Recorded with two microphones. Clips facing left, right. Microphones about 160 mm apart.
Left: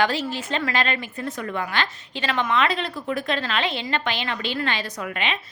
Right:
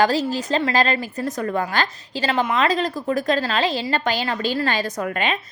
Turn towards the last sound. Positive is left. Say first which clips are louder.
# right 5 dB
turn(degrees=-45)  # may be behind; listen again after turning